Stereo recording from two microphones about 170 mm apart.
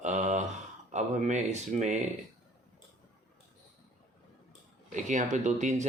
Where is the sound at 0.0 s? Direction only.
45° right (ahead or behind).